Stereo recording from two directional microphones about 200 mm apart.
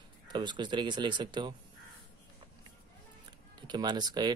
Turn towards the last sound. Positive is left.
turn(degrees=-20)  # may be behind; listen again after turning